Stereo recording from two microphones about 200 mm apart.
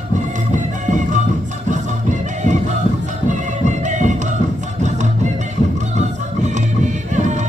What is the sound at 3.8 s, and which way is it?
Music, 35° right (ahead or behind).